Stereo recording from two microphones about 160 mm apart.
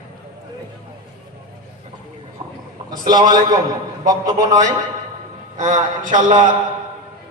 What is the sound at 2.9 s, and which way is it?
A man's voice, 25° right (ahead or behind).